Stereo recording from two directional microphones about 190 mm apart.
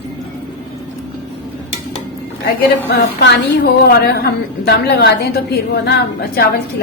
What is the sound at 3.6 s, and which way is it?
A woman's voice, 55° left (ahead or behind).